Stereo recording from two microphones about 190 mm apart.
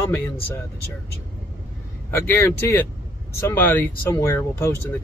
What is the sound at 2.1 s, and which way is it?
Speech, 15° left (ahead or behind).